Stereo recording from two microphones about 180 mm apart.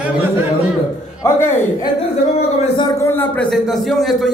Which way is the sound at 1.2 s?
15° left (ahead or behind).